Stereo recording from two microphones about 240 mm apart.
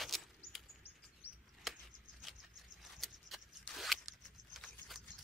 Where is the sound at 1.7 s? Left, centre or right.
Centre.